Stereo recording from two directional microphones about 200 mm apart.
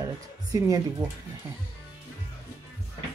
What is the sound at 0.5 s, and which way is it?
Speech, 15° right (ahead or behind).